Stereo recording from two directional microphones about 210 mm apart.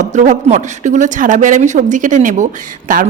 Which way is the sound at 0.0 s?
35° right (ahead or behind).